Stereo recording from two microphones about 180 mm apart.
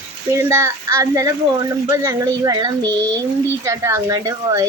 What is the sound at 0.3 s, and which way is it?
Speech, 15° right (ahead or behind).